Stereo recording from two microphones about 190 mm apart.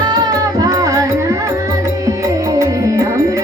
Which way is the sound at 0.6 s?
20° right (ahead or behind).